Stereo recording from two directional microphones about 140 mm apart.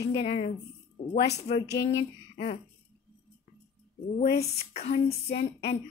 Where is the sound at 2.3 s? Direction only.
60° left (ahead or behind).